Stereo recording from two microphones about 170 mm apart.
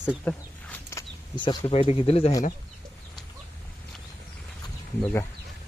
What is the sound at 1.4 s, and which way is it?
Speech, 30° left (ahead or behind).